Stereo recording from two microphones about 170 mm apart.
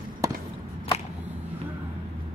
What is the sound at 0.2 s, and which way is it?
Whip, 20° right (ahead or behind).